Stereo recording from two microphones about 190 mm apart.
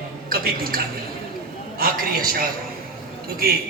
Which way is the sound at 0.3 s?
50° right (ahead or behind).